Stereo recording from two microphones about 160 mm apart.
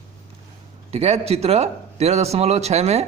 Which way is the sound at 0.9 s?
40° right (ahead or behind).